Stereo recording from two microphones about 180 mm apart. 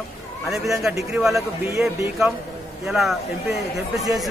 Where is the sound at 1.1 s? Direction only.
Centre (ahead or behind).